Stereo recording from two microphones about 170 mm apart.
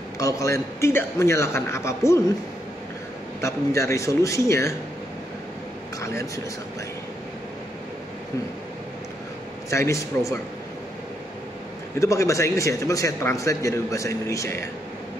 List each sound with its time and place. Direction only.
0.2 s speech: 20° left (ahead or behind)
3.3 s speech: 15° left (ahead or behind)
9.7 s speech: 15° left (ahead or behind)
12.0 s speech: 15° left (ahead or behind)